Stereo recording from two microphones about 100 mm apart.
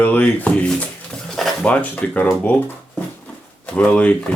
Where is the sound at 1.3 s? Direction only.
5° left (ahead or behind).